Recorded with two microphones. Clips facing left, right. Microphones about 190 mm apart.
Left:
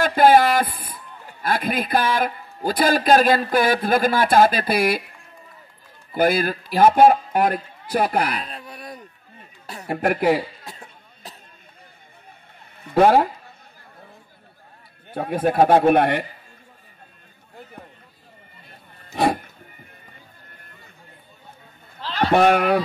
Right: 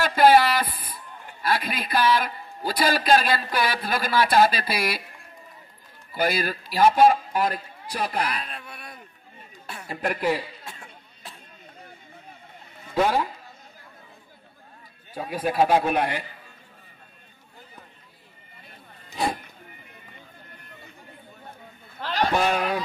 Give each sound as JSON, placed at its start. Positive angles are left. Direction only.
{"t": 0.0, "sound": "a man's voice", "side_deg": 50}
{"t": 6.1, "sound": "a man's voice", "side_deg": 50}
{"t": 8.4, "sound": "wail", "side_deg": 35}
{"t": 9.8, "sound": "a man's voice", "side_deg": 60}
{"t": 10.6, "sound": "chatter", "side_deg": 40}
{"t": 12.8, "sound": "a man's voice", "side_deg": 60}
{"t": 15.0, "sound": "a man's voice", "side_deg": 55}
{"t": 19.1, "sound": "music", "side_deg": 65}
{"t": 22.2, "sound": "speech", "side_deg": 60}